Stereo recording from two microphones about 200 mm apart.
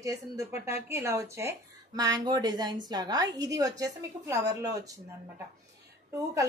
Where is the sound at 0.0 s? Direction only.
15° right (ahead or behind).